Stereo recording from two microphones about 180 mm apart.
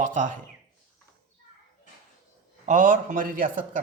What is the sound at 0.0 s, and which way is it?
Speech, 45° right (ahead or behind).